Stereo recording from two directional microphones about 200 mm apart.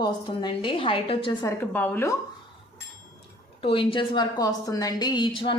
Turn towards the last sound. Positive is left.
turn(degrees=25)  # may be behind; listen again after turning